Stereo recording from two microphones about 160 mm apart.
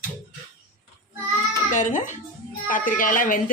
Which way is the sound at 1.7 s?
50° left (ahead or behind).